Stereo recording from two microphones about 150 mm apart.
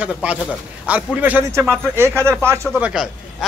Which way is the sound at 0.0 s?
10° right (ahead or behind).